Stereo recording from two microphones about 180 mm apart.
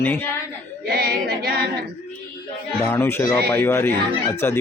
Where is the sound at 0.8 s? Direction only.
60° right (ahead or behind).